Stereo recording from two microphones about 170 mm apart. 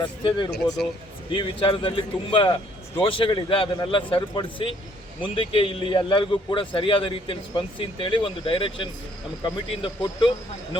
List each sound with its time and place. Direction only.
0.0 s a man's voice: 30° left (ahead or behind)